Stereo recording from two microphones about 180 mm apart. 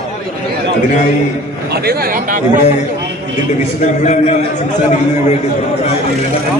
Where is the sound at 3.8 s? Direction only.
40° left (ahead or behind).